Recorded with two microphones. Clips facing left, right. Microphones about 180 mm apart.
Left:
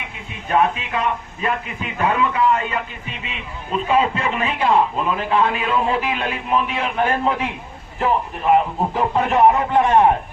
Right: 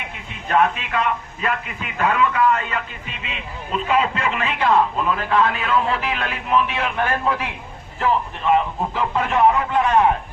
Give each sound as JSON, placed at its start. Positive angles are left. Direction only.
{"t": 0.4, "sound": "a man's voice", "side_deg": 20}
{"t": 3.8, "sound": "a man's voice", "side_deg": 30}
{"t": 4.7, "sound": "a man's voice", "side_deg": 15}